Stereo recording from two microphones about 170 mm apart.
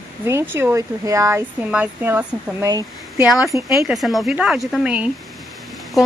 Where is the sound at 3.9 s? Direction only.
Centre (ahead or behind).